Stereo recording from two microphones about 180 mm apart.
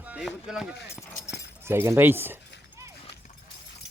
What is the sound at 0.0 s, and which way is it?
Speech, 5° right (ahead or behind).